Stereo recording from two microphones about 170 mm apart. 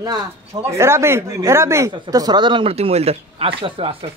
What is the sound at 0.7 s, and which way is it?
Speech, 15° right (ahead or behind).